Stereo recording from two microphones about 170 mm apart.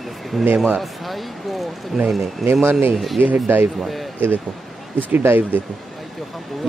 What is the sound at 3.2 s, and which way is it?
Speech, 10° right (ahead or behind).